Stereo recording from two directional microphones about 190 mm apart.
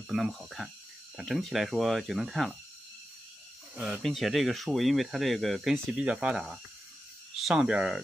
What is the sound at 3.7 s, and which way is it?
Speech, 5° right (ahead or behind).